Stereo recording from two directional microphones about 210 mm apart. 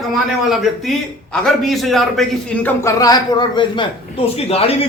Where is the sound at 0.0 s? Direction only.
Centre (ahead or behind).